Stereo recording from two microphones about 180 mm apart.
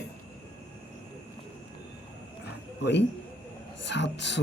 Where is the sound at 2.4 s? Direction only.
70° left (ahead or behind).